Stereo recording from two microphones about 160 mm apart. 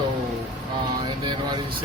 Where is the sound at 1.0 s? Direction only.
30° right (ahead or behind).